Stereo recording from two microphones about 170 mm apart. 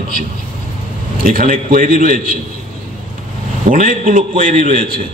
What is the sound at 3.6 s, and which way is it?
Speech, 50° right (ahead or behind).